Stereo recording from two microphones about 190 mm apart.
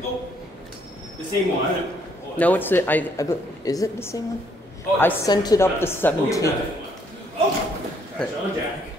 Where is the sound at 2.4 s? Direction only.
10° left (ahead or behind).